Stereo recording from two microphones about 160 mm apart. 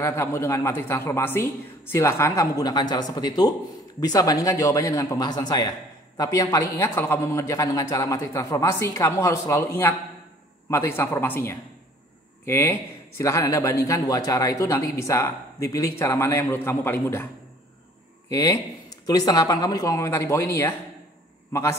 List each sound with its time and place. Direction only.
0.0 s a man's voice: 15° left (ahead or behind)
18.3 s a man's voice: 20° left (ahead or behind)